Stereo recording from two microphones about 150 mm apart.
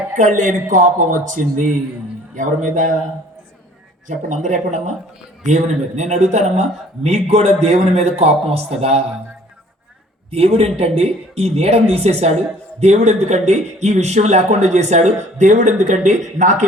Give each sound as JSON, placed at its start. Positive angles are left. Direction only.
{"t": 0.2, "sound": "speech", "side_deg": -55}
{"t": 4.1, "sound": "speech", "side_deg": -55}
{"t": 10.3, "sound": "speech", "side_deg": -40}